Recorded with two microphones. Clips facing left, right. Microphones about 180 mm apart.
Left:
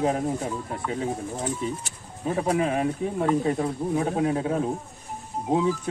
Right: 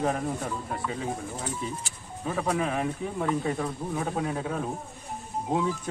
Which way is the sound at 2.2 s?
35° left (ahead or behind).